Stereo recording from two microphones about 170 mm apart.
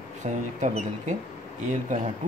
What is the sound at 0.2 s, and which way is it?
Speech, 45° right (ahead or behind).